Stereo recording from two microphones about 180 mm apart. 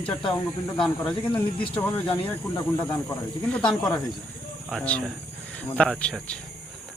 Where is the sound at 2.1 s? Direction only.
30° left (ahead or behind).